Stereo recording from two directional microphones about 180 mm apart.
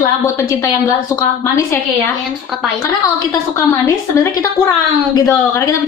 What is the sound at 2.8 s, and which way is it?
A woman's voice, 15° left (ahead or behind).